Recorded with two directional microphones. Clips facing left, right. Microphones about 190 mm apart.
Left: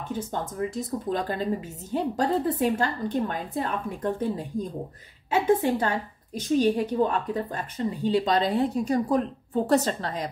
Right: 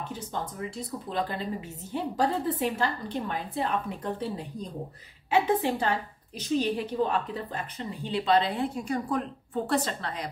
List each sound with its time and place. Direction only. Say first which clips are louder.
0.3 s a woman's voice: left 4 dB; 45° left (ahead or behind)